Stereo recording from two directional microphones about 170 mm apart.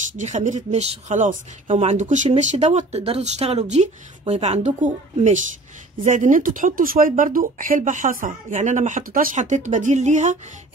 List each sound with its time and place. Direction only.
0.2 s speech: 45° right (ahead or behind)